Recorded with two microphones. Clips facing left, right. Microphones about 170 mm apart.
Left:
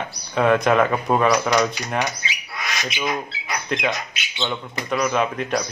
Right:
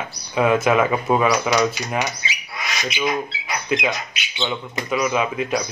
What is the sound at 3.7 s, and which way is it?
Speech, 5° right (ahead or behind).